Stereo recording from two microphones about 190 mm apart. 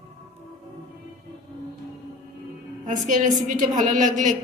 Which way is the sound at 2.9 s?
40° right (ahead or behind).